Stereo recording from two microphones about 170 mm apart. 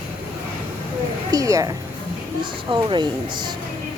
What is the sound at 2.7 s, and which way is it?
Speech, 30° right (ahead or behind).